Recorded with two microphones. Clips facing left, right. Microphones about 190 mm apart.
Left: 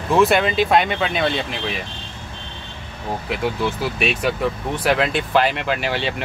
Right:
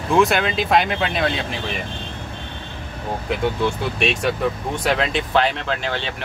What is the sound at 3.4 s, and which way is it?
Speech, 5° left (ahead or behind).